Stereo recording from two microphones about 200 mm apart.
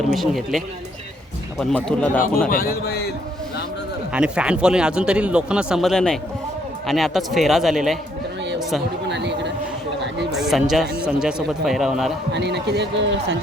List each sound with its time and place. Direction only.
0.1 s speech: centre (ahead or behind)
2.5 s a man's voice: 50° left (ahead or behind)
4.1 s speech: 5° right (ahead or behind)
9.0 s a sound: 60° right (ahead or behind)
10.3 s speech: centre (ahead or behind)
12.3 s a man's voice: 55° right (ahead or behind)